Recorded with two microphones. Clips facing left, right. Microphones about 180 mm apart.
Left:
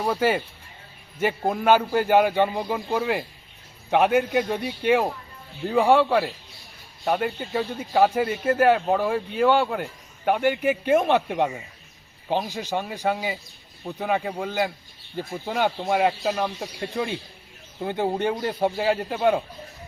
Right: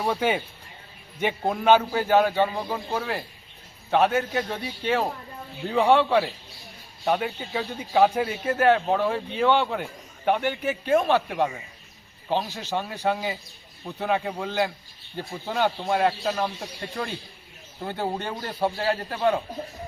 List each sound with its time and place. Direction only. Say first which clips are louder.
0.0 s a man's voice: left 2 dB; 5° left (ahead or behind)
15.4 s a man's voice: even; 10° left (ahead or behind)
17.8 s a man's voice: left 5 dB; 15° left (ahead or behind)